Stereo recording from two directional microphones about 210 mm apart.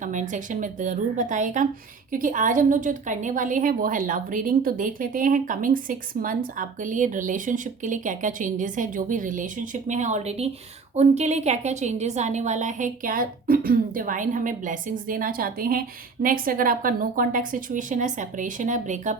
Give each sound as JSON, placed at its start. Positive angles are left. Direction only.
{"t": 0.0, "sound": "a woman's voice", "side_deg": -35}